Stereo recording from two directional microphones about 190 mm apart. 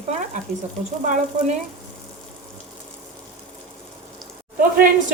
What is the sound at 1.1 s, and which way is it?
Frying, 40° right (ahead or behind).